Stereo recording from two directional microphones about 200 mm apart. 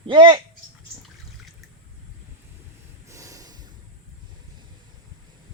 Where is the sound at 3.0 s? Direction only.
15° right (ahead or behind).